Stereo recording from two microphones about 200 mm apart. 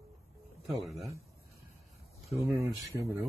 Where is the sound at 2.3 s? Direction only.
15° right (ahead or behind).